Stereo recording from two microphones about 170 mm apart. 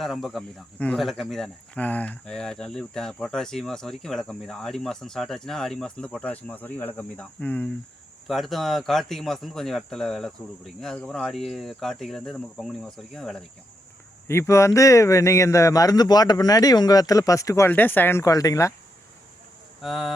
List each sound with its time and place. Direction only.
0.0 s speech: centre (ahead or behind)
14.3 s speech: 15° left (ahead or behind)
19.8 s speech: centre (ahead or behind)